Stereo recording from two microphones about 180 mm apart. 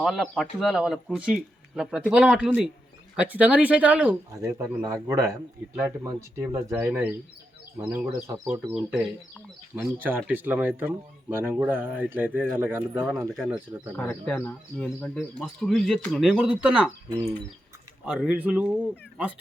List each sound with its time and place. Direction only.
0.0 s speech: centre (ahead or behind); by 8.7 s 15° right (ahead or behind)
8.7 s speech: 5° right (ahead or behind)
13.9 s speech: 10° left (ahead or behind)
18.0 s speech: 5° right (ahead or behind)